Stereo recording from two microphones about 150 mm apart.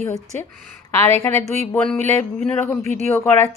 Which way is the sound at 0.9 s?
15° left (ahead or behind).